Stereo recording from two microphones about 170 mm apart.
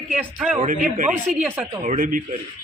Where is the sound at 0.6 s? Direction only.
50° right (ahead or behind).